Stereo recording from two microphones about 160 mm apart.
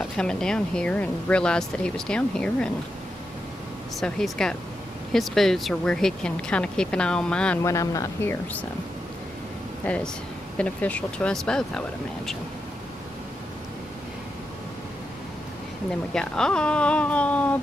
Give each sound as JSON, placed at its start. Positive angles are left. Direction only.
{"t": 0.0, "sound": "speech", "side_deg": 5}
{"t": 4.0, "sound": "speech", "side_deg": 5}
{"t": 7.6, "sound": "speech", "side_deg": 20}
{"t": 9.8, "sound": "speech", "side_deg": 10}
{"t": 16.1, "sound": "speech", "side_deg": 5}